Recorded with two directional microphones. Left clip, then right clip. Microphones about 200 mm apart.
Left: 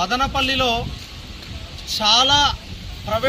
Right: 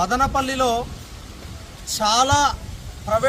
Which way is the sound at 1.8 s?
15° right (ahead or behind).